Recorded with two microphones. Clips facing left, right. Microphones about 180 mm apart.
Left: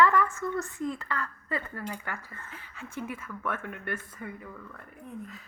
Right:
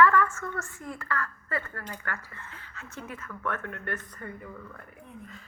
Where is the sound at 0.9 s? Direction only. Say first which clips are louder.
Right 1 dB; 20° left (ahead or behind).